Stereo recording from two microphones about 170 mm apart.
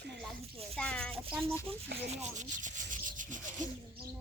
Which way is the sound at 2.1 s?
45° right (ahead or behind).